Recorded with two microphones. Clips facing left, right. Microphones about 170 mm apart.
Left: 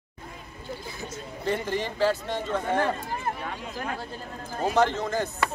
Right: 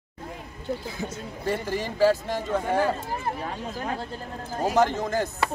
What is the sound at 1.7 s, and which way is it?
Speech, 10° right (ahead or behind).